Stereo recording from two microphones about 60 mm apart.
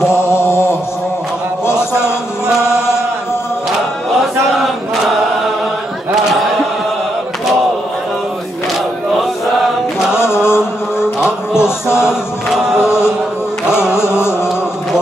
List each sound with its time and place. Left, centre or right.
0.0 s mantra: left
2.0 s chant: centre
9.2 s chant: centre
10.1 s mantra: left
11.5 s music: left
12.1 s chant: centre
13.9 s music: left